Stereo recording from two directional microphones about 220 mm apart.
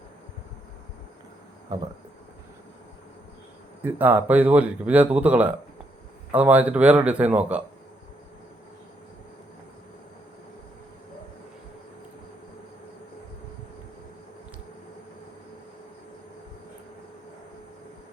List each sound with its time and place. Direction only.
1.7 s speech: 15° right (ahead or behind)
3.8 s speech: 10° right (ahead or behind)